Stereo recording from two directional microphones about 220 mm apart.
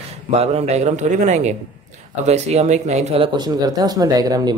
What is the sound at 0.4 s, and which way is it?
Speech, 30° right (ahead or behind).